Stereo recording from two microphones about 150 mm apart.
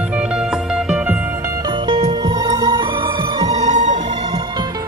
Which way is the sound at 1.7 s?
35° right (ahead or behind).